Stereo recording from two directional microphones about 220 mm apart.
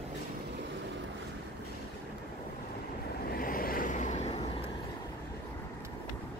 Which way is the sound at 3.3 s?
40° left (ahead or behind).